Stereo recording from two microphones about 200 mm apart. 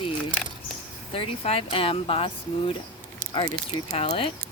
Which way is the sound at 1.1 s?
30° left (ahead or behind).